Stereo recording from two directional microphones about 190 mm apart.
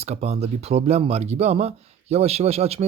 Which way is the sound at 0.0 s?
35° right (ahead or behind).